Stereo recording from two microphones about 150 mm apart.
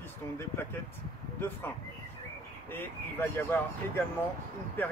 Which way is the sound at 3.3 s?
15° left (ahead or behind).